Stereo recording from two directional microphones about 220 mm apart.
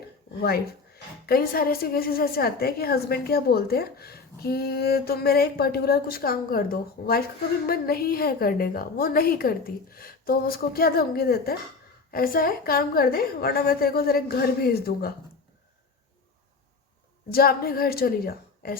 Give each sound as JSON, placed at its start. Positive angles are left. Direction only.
{"t": 0.4, "sound": "a woman's voice", "side_deg": 45}
{"t": 17.3, "sound": "a woman's voice", "side_deg": 45}